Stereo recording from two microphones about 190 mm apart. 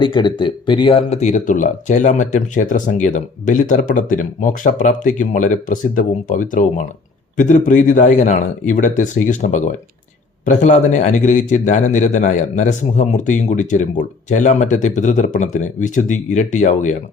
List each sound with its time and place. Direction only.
0.0 s speech: 25° left (ahead or behind); by 16.9 s 40° left (ahead or behind)